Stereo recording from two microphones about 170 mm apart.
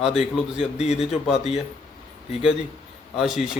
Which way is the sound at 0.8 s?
40° left (ahead or behind).